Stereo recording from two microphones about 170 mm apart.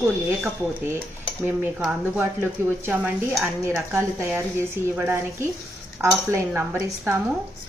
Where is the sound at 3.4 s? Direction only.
15° right (ahead or behind).